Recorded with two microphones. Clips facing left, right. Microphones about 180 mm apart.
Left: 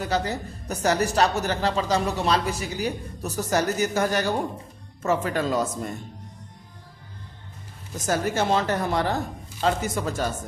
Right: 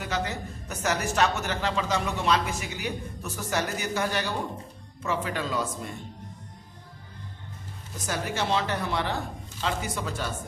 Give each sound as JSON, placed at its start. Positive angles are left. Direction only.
{"t": 0.0, "sound": "a woman's voice", "side_deg": 35}
{"t": 8.0, "sound": "speech", "side_deg": 45}